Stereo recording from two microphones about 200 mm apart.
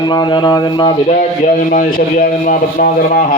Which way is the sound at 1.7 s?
45° left (ahead or behind).